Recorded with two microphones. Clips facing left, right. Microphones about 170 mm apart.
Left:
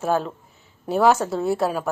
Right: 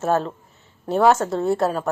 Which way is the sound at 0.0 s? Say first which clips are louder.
Right 1 dB; centre (ahead or behind).